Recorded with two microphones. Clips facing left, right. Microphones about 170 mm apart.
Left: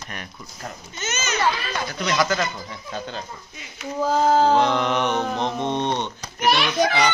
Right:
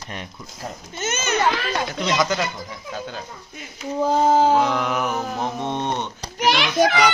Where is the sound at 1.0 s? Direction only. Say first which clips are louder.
Right 4 dB; 55° right (ahead or behind).